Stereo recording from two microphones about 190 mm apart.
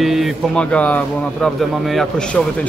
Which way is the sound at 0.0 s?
Centre (ahead or behind).